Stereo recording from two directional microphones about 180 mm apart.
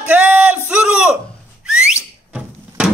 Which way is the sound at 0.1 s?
5° right (ahead or behind).